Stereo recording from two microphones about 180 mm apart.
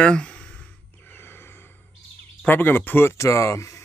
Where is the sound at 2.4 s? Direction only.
10° left (ahead or behind).